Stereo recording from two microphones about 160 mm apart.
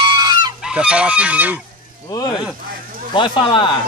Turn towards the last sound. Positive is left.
turn(degrees=30)  # may be behind; listen again after turning